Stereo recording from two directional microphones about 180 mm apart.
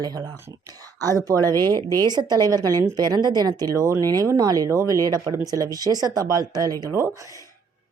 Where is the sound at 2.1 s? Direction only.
25° right (ahead or behind).